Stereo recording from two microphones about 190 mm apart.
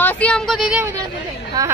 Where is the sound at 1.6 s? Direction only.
20° right (ahead or behind).